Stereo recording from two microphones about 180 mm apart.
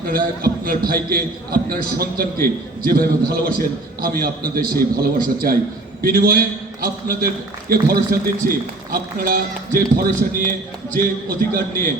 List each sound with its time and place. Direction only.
0.1 s a man's voice: 55° right (ahead or behind)